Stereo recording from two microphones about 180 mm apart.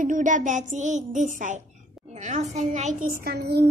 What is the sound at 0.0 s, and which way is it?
A child's voice, 45° right (ahead or behind).